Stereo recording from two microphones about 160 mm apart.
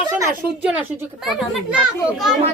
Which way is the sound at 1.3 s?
Centre (ahead or behind).